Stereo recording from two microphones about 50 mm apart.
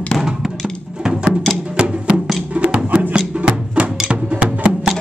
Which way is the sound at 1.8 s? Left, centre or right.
Centre.